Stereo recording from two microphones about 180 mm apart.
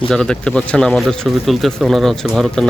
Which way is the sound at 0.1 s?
5° left (ahead or behind).